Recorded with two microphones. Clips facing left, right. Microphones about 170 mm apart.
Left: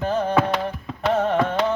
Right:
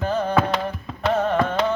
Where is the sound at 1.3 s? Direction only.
15° left (ahead or behind).